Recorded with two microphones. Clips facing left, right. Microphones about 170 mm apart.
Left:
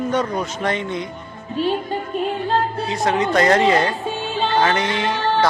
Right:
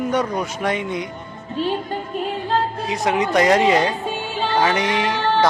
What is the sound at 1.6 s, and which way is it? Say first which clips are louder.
Music: left 2 dB; 15° left (ahead or behind).